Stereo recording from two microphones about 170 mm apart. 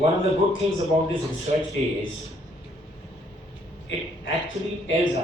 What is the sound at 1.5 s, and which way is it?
Speech, 35° right (ahead or behind).